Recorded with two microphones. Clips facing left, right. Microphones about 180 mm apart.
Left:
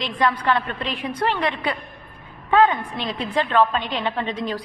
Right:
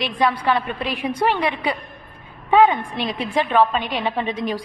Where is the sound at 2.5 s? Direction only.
10° right (ahead or behind).